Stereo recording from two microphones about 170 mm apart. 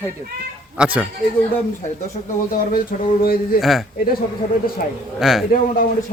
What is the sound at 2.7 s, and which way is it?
Speech, 60° left (ahead or behind).